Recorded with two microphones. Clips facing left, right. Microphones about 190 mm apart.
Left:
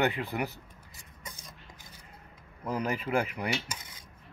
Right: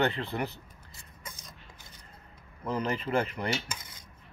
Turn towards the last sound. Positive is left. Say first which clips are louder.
# even
turn(degrees=10)  # may be behind; listen again after turning